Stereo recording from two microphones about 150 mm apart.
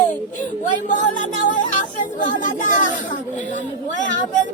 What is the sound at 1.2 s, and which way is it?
Speech, 60° left (ahead or behind).